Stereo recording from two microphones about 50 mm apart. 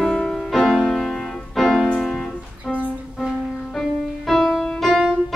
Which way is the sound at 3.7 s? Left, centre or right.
Centre.